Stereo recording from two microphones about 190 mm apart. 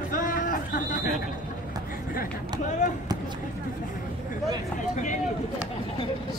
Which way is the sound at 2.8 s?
40° left (ahead or behind).